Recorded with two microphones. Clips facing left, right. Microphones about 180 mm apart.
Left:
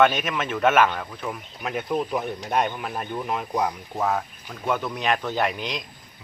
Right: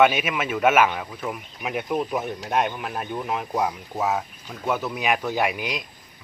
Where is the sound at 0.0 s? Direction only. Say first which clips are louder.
Right 1 dB; 10° right (ahead or behind).